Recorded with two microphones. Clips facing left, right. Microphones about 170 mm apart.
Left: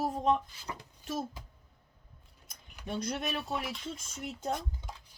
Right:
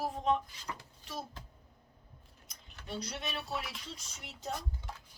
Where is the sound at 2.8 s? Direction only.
50° left (ahead or behind).